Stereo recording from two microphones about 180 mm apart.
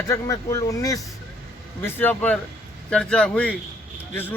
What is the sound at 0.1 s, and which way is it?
Speech, 20° left (ahead or behind).